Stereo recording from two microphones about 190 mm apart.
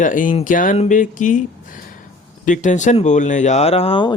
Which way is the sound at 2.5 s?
40° left (ahead or behind).